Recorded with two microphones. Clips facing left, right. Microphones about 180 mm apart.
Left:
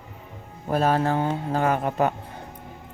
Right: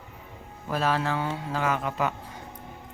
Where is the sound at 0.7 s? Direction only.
50° left (ahead or behind).